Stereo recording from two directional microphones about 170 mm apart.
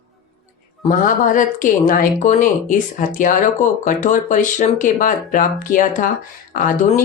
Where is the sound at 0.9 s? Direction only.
55° left (ahead or behind).